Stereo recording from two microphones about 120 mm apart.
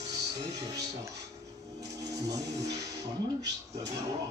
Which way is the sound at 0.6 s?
30° right (ahead or behind).